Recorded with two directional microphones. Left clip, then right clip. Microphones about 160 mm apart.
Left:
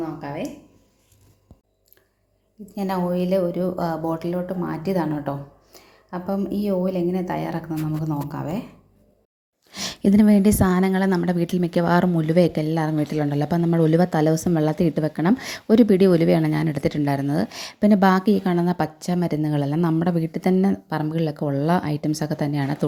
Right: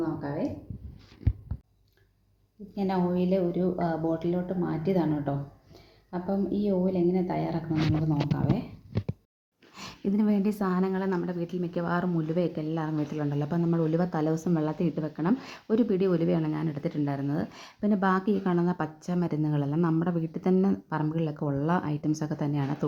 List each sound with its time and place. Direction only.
0.2 s speech: 5° left (ahead or behind)
2.7 s a woman's voice: 15° left (ahead or behind)
9.7 s a woman's voice: 45° left (ahead or behind); by 22.9 s 30° left (ahead or behind)